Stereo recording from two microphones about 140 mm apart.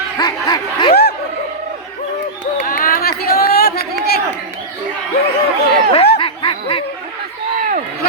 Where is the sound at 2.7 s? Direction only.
85° left.